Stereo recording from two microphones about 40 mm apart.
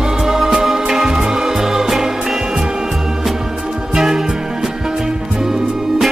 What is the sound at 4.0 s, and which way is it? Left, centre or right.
Music, centre.